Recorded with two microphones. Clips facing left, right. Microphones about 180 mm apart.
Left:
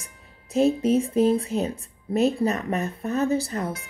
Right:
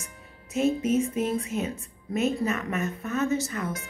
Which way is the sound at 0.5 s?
35° left (ahead or behind).